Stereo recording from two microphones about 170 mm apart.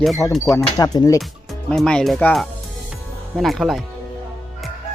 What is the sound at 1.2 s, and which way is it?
Speech, centre (ahead or behind).